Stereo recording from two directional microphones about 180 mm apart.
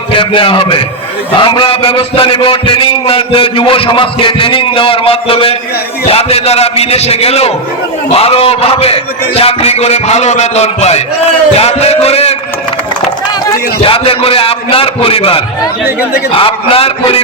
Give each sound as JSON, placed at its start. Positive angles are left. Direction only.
{"t": 0.1, "sound": "a man's voice", "side_deg": 30}
{"t": 13.4, "sound": "a man's voice", "side_deg": 30}